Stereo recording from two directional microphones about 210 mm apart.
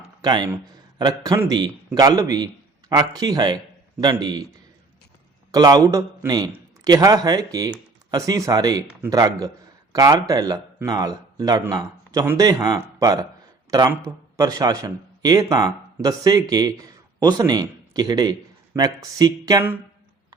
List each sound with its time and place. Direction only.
0.2 s speech: 20° right (ahead or behind)
5.5 s a man's voice: 20° right (ahead or behind)